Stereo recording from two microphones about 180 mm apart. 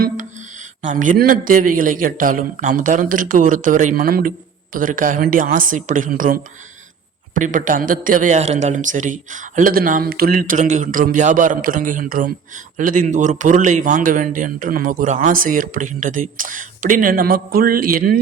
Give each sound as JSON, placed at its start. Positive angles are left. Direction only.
{"t": 0.8, "sound": "a man's voice", "side_deg": -45}